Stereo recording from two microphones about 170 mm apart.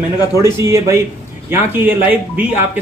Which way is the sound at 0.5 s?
15° right (ahead or behind).